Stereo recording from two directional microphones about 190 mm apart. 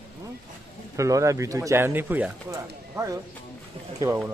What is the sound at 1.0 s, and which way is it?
Speech, 15° right (ahead or behind).